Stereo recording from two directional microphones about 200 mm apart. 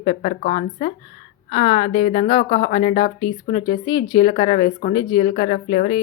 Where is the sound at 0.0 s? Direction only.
35° left (ahead or behind).